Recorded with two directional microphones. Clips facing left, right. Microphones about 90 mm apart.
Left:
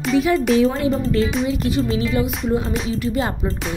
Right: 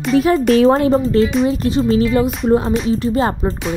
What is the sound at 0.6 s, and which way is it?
Speech, 55° right (ahead or behind).